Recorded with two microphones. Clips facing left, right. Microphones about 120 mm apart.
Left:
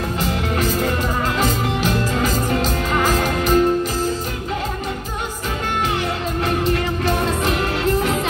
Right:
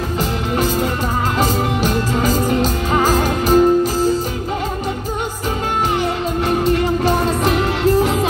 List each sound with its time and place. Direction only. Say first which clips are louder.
0.6 s music: right 3 dB; 35° right (ahead or behind)
2.2 s music: right 3 dB; 40° right (ahead or behind)
5.9 s music: right 4 dB; 35° right (ahead or behind)